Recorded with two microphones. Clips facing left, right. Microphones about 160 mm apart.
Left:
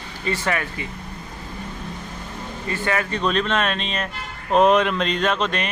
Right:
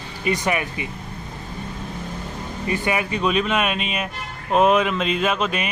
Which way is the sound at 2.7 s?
15° right (ahead or behind).